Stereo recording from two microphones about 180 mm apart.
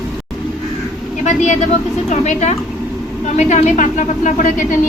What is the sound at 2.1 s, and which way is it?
A woman's voice, 40° left (ahead or behind).